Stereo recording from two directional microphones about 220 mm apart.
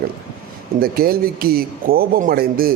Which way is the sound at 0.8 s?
45° right (ahead or behind).